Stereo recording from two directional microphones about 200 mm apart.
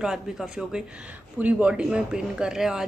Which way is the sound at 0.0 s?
5° right (ahead or behind).